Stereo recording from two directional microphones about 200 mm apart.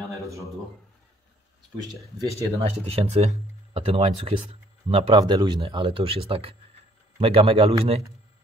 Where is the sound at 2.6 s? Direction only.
30° right (ahead or behind).